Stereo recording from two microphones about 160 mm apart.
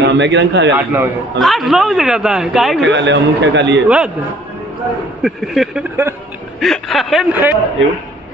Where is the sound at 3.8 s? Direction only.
5° right (ahead or behind).